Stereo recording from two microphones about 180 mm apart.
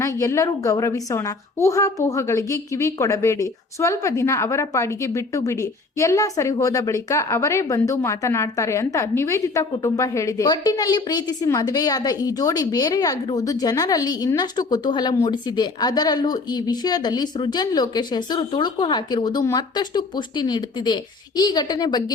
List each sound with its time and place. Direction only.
0.0 s a woman's voice: 15° left (ahead or behind)